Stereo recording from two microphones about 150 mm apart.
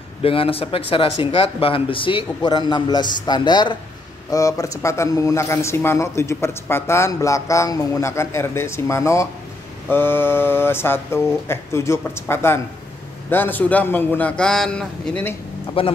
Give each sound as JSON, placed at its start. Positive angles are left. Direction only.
{"t": 0.2, "sound": "a man's voice", "side_deg": 40}
{"t": 15.8, "sound": "a man's voice", "side_deg": 35}